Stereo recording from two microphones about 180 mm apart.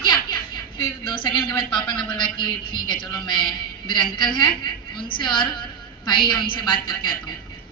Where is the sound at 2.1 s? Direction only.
25° left (ahead or behind).